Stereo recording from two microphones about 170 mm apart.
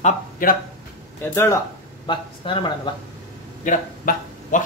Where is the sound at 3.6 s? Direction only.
50° left (ahead or behind).